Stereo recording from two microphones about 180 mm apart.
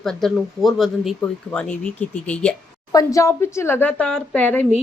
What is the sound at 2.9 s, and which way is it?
A woman's voice, 20° left (ahead or behind).